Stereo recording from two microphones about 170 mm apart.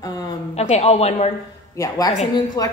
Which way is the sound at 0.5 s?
40° left (ahead or behind).